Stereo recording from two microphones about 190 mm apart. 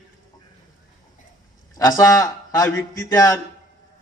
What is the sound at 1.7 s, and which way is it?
A man's voice, 15° left (ahead or behind).